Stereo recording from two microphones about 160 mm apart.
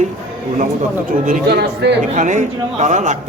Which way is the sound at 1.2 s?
75° right (ahead or behind).